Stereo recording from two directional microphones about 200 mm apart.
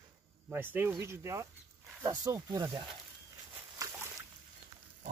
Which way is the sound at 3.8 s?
15° right (ahead or behind).